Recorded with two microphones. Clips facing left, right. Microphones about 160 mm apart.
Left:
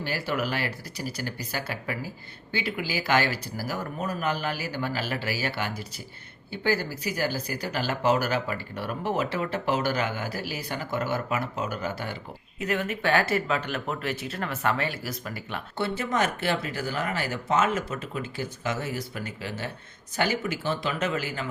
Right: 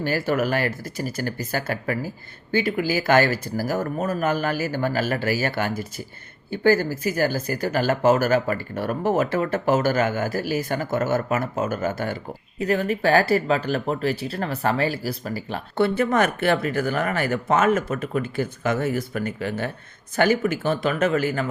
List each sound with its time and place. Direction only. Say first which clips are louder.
0.0 s speech: right 7 dB; 45° right (ahead or behind)
12.5 s speech: right 6 dB; 35° right (ahead or behind)
15.8 s speech: right 7 dB; 55° right (ahead or behind)